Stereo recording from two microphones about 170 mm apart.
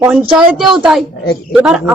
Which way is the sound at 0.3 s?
5° right (ahead or behind).